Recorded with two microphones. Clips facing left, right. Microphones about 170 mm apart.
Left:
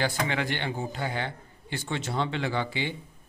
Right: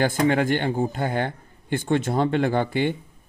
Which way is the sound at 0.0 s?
50° right (ahead or behind).